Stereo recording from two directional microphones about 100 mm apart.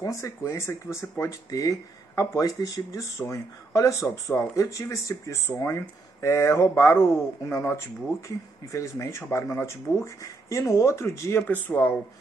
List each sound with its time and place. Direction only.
0.0 s speech: 35° left (ahead or behind)
11.4 s speech: 20° left (ahead or behind)